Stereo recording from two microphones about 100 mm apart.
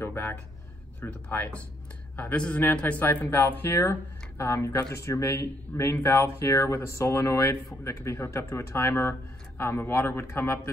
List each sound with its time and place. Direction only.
0.0 s speech: 25° left (ahead or behind)